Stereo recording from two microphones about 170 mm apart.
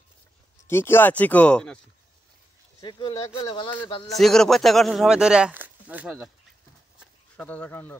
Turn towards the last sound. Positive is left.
turn(degrees=10)  # may be behind; listen again after turning